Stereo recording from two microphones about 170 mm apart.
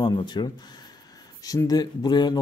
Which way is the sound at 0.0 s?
25° left (ahead or behind).